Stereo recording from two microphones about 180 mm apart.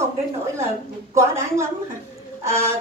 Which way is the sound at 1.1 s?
15° right (ahead or behind).